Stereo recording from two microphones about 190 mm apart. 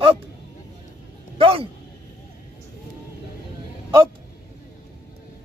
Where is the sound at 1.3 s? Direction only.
30° right (ahead or behind).